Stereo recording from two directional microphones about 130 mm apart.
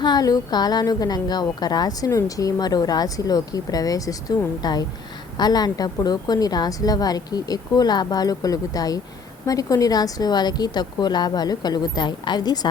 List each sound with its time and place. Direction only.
0.0 s a woman's voice: 30° left (ahead or behind)